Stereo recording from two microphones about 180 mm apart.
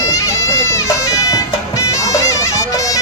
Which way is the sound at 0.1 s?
20° left (ahead or behind).